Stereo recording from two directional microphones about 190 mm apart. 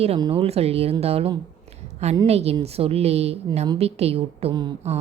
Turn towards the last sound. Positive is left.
turn(degrees=-25)  # may be behind; listen again after turning